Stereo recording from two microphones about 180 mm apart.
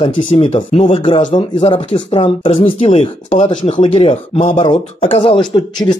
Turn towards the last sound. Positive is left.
turn(degrees=25)  # may be behind; listen again after turning